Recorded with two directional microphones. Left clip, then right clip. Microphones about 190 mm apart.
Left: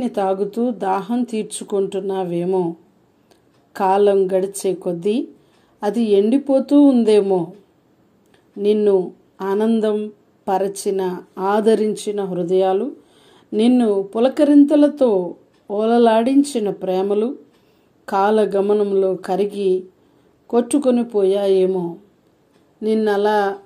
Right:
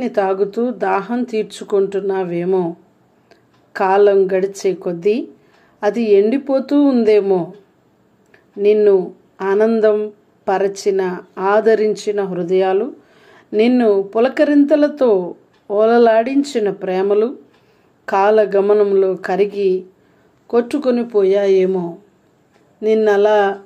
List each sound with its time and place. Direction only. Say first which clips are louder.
0.0 s speech: right 3 dB; 30° left (ahead or behind)
3.3 s a sound: right 5 dB; 30° left (ahead or behind)
4.3 s speech: right 2 dB; 30° left (ahead or behind)
8.5 s speech: right 4 dB; 35° left (ahead or behind)
23.0 s speech: right 4 dB; centre (ahead or behind)